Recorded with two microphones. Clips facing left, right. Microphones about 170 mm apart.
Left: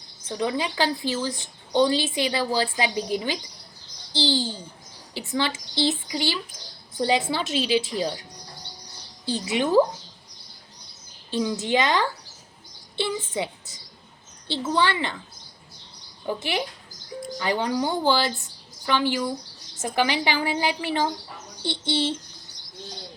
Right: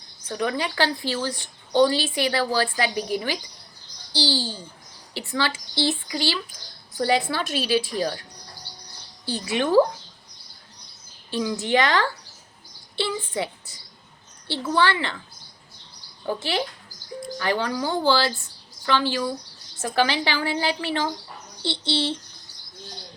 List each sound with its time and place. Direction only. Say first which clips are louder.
0.3 s a woman's voice: even; 20° left (ahead or behind)
9.2 s a woman's voice: even; 20° left (ahead or behind)
11.3 s a woman's voice: even; 20° left (ahead or behind)
16.2 s a woman's voice: right 1 dB; 15° left (ahead or behind)